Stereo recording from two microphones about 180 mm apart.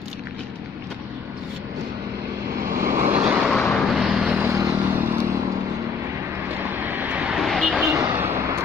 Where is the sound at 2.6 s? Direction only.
15° right (ahead or behind).